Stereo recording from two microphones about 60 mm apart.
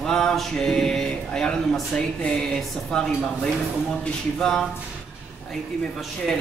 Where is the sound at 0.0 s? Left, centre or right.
Centre.